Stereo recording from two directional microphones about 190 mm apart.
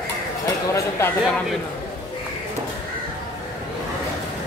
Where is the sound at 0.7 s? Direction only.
15° left (ahead or behind).